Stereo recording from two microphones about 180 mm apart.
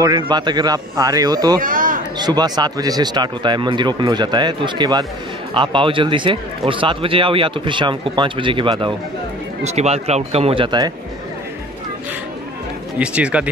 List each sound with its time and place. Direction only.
0.0 s speech: 25° right (ahead or behind)
1.6 s speech: 50° right (ahead or behind)
2.1 s speech: 25° right (ahead or behind)
13.0 s speech: 5° right (ahead or behind)